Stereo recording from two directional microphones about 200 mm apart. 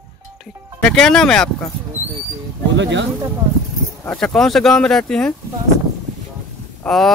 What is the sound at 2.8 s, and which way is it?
Speech, 60° right (ahead or behind).